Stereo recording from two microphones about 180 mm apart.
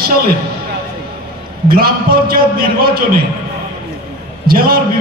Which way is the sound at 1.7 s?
55° right (ahead or behind).